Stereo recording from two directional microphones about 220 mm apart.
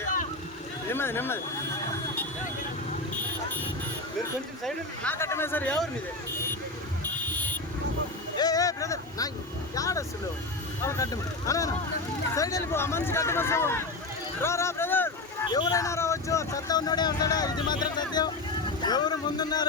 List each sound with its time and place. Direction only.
0.9 s a sound: 10° left (ahead or behind)
4.6 s speech: 10° left (ahead or behind)
7.3 s wild animals: 5° left (ahead or behind)
8.4 s speech: 15° left (ahead or behind)